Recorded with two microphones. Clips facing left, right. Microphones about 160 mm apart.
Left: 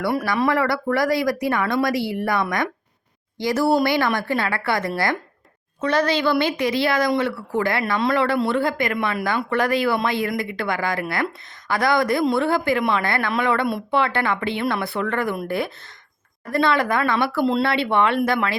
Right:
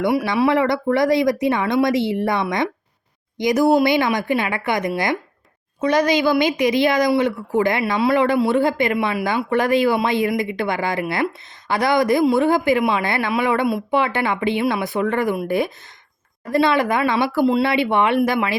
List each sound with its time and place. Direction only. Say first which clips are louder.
0.0 s speech: right 3 dB; 15° right (ahead or behind)
17.4 s speech: right 4 dB; 5° right (ahead or behind)
17.7 s speech: right 2 dB; 15° right (ahead or behind)